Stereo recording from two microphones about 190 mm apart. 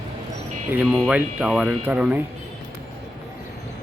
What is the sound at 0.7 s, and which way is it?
Speech, 5° right (ahead or behind).